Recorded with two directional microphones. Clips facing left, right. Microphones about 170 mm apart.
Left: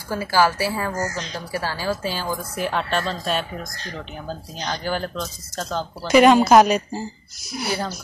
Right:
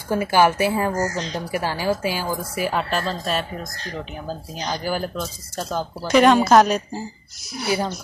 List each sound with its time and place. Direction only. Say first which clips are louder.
0.1 s speech: right 2 dB; 20° right (ahead or behind)
0.9 s speech: right 3 dB; 35° right (ahead or behind)
1.3 s a woman's voice: right 3 dB; 15° right (ahead or behind)
6.0 s a woman's voice: left 2 dB; 5° left (ahead or behind)